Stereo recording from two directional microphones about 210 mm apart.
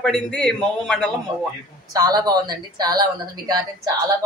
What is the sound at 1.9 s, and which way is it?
A woman's voice, 20° right (ahead or behind).